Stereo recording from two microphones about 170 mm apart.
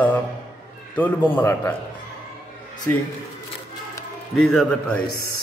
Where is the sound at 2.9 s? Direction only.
10° left (ahead or behind).